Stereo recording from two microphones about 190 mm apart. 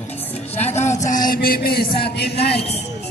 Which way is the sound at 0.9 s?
40° left (ahead or behind).